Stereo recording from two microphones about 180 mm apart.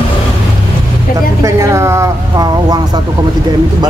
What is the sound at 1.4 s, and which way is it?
Speech, 15° right (ahead or behind).